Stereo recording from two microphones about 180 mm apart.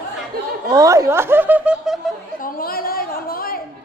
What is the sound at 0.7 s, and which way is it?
Snicker, 20° right (ahead or behind).